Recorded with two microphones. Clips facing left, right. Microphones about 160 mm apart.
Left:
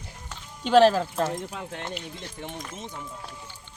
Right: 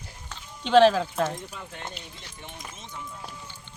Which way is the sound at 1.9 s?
50° left (ahead or behind).